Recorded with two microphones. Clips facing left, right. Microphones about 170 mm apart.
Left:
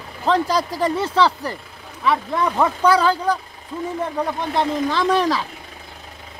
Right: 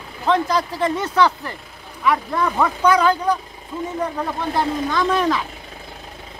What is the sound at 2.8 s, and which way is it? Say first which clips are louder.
Speech: right 1 dB; 35° left (ahead or behind).